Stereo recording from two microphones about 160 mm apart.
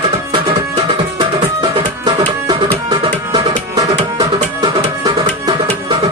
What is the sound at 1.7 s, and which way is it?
Music, 30° right (ahead or behind).